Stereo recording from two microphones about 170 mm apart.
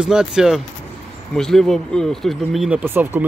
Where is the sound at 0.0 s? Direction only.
5° right (ahead or behind).